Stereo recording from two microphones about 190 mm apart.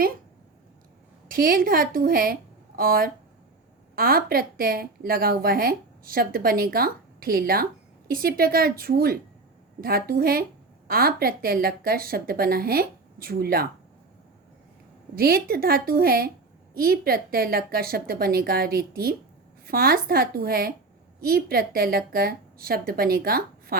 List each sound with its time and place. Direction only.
1.3 s a woman's voice: 50° right (ahead or behind)
15.1 s speech: 55° right (ahead or behind)